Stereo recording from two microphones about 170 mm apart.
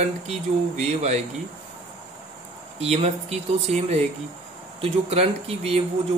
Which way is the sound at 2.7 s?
40° right (ahead or behind).